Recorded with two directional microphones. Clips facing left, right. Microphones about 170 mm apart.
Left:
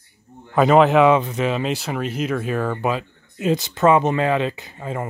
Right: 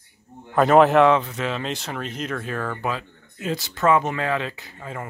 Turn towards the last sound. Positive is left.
turn(degrees=25)  # may be behind; listen again after turning